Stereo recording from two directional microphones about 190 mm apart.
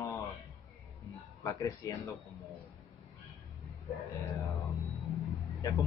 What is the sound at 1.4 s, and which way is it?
Speech, 15° left (ahead or behind).